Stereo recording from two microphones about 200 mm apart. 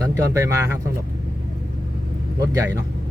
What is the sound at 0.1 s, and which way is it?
Speech, 15° right (ahead or behind).